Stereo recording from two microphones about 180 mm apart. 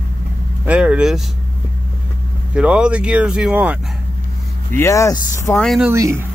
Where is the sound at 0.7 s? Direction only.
5° right (ahead or behind).